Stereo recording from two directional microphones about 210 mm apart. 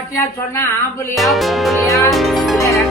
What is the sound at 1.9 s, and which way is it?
Speech, 15° left (ahead or behind).